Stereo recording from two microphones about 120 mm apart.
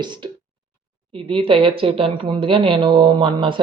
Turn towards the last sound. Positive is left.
turn(degrees=-40)  # may be behind; listen again after turning